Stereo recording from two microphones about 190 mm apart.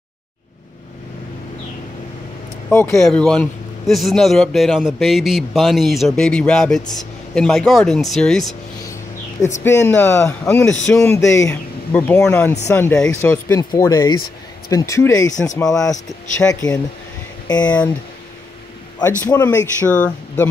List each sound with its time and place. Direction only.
2.7 s a man's voice: 10° left (ahead or behind)
9.6 s a man's voice: 10° left (ahead or behind)
11.1 s speech: 15° left (ahead or behind)
17.5 s speech: 20° left (ahead or behind)
18.9 s speech: 20° left (ahead or behind)